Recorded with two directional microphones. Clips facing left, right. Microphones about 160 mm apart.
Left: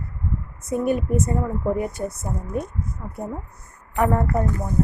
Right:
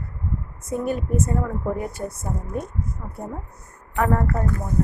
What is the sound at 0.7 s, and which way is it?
Speech, 10° left (ahead or behind).